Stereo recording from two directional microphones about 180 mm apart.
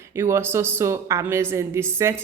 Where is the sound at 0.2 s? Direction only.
15° right (ahead or behind).